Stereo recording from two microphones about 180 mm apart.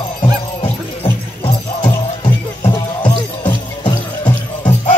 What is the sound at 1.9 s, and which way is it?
Music, 20° left (ahead or behind).